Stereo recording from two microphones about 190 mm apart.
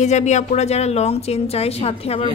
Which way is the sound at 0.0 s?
40° left (ahead or behind).